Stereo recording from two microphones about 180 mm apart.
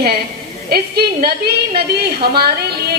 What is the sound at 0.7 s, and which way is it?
A woman's voice, 60° right (ahead or behind).